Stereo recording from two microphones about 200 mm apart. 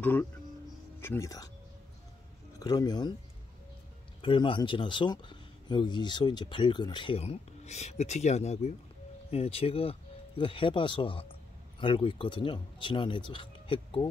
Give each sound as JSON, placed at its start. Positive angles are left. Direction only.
{"t": 0.0, "sound": "speech", "side_deg": 10}
{"t": 2.6, "sound": "speech", "side_deg": 20}
{"t": 4.2, "sound": "speech", "side_deg": 25}